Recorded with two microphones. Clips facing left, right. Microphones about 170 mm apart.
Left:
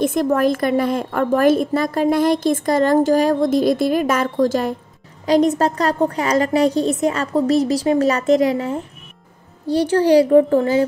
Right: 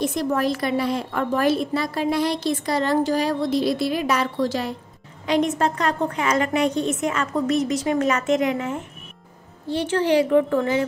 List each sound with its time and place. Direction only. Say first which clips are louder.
0.0 s a woman's voice: left 6 dB; 55° left (ahead or behind)
5.2 s a woman's voice: left 5 dB; 35° left (ahead or behind)